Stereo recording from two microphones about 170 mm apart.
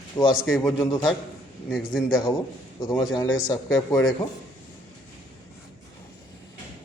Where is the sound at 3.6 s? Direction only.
5° left (ahead or behind).